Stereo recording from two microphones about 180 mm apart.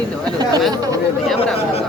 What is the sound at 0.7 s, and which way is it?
Speech, 20° right (ahead or behind).